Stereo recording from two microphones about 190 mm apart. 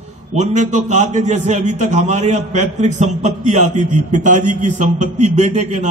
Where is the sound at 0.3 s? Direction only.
40° right (ahead or behind).